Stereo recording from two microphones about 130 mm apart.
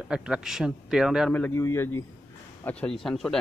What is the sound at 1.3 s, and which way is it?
A man's voice, 15° left (ahead or behind).